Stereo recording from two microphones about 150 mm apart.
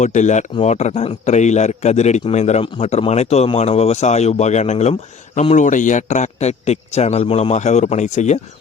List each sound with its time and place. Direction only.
0.0 s speech: 55° left (ahead or behind)